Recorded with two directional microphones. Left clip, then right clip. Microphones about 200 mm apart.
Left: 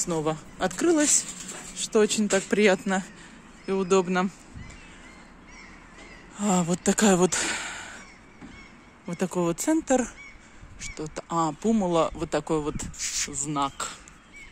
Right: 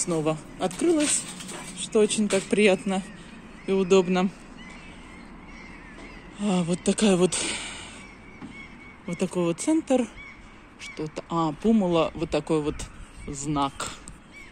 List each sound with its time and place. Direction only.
0.0 s speech: 25° left (ahead or behind)
3.6 s speech: 15° left (ahead or behind)
6.3 s speech: 30° left (ahead or behind)
9.0 s speech: 20° left (ahead or behind)